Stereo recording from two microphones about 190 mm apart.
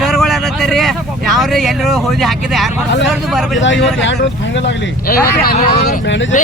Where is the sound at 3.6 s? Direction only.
75° left (ahead or behind).